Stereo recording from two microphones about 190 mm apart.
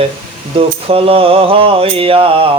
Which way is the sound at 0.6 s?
30° right (ahead or behind).